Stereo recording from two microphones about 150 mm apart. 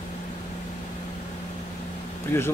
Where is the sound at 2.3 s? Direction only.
15° left (ahead or behind).